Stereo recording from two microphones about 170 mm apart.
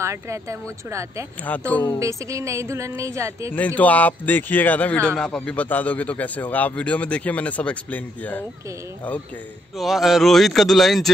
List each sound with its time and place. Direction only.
0.0 s speech: 15° right (ahead or behind)
3.5 s speech: 10° left (ahead or behind)
9.8 s speech: centre (ahead or behind)